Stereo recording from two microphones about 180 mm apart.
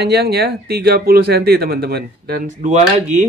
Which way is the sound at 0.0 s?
65° right (ahead or behind).